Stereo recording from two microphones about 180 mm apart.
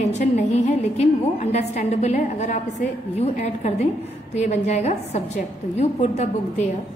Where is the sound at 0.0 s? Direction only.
40° left (ahead or behind).